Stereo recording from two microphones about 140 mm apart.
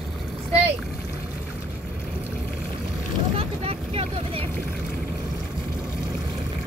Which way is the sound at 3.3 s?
45° right (ahead or behind).